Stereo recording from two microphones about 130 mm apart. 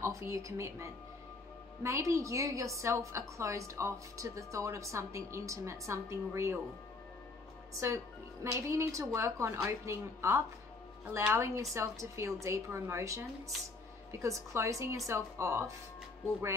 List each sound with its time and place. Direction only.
0.0 s a woman's voice: 20° right (ahead or behind)
8.5 s a woman's voice: 20° right (ahead or behind)
14.2 s a woman's voice: 20° right (ahead or behind)